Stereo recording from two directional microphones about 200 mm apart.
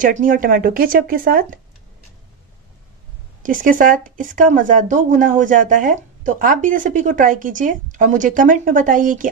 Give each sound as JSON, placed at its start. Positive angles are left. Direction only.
{"t": 0.0, "sound": "speech", "side_deg": -40}
{"t": 3.4, "sound": "speech", "side_deg": -40}